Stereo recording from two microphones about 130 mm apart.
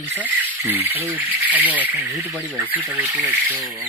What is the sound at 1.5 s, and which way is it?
Speech, 10° right (ahead or behind).